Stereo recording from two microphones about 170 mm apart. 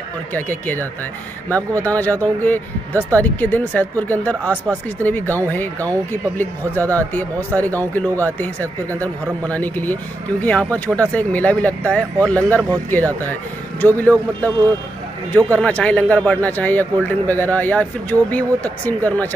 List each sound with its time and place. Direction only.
0.3 s speech: 10° left (ahead or behind)
12.2 s speech: 15° right (ahead or behind)
12.9 s speech: 10° left (ahead or behind)